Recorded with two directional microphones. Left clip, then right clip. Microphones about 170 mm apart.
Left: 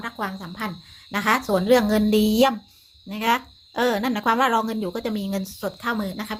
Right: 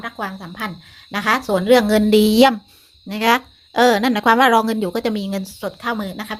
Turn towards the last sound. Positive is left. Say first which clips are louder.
# right 3 dB
turn(degrees=-20)  # may be behind; listen again after turning